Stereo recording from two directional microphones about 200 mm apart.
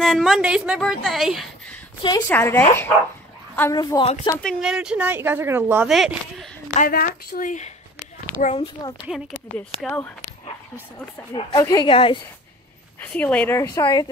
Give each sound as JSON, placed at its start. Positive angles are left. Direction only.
{"t": 0.0, "sound": "a woman's voice", "side_deg": 0}
{"t": 2.2, "sound": "a woman's voice", "side_deg": 10}
{"t": 3.8, "sound": "speech", "side_deg": 25}
{"t": 4.4, "sound": "speech", "side_deg": 0}
{"t": 6.7, "sound": "speech", "side_deg": 45}
{"t": 9.1, "sound": "a woman's voice", "side_deg": -5}
{"t": 9.8, "sound": "speech", "side_deg": 5}
{"t": 11.3, "sound": "speech", "side_deg": 20}
{"t": 13.0, "sound": "speech", "side_deg": 5}